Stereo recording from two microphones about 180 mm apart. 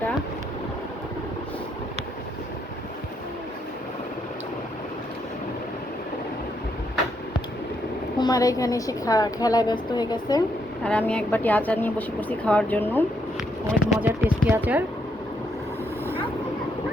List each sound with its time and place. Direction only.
8.2 s a woman's voice: 20° left (ahead or behind)
10.8 s a woman's voice: 5° left (ahead or behind)
13.9 s speech: 10° right (ahead or behind)